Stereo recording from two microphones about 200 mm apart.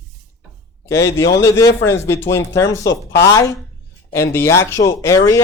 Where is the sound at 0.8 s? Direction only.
15° left (ahead or behind).